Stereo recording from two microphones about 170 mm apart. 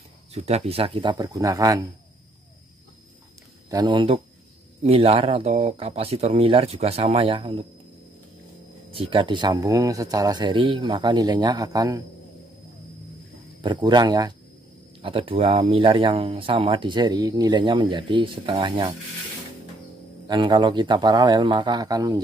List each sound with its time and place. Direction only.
0.3 s speech: 40° right (ahead or behind); by 1.9 s 20° right (ahead or behind)
3.7 s speech: 25° right (ahead or behind)
8.9 s speech: 30° right (ahead or behind)
13.6 s speech: 25° right (ahead or behind)
20.2 s speech: 25° right (ahead or behind)